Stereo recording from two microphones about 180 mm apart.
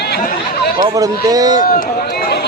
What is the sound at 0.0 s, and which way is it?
Chatter, 60° left (ahead or behind).